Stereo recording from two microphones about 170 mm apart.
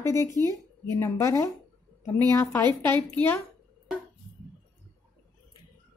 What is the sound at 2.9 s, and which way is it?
Speech, 10° left (ahead or behind).